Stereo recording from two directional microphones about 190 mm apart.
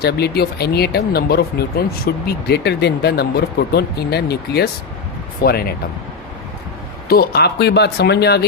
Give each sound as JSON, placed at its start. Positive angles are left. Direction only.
{"t": 0.0, "sound": "speech", "side_deg": 55}
{"t": 7.1, "sound": "speech", "side_deg": 55}